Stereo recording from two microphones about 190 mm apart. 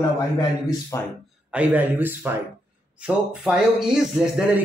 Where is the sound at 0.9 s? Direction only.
15° left (ahead or behind).